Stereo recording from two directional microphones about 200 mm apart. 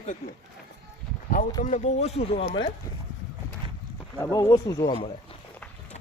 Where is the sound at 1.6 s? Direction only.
40° left (ahead or behind).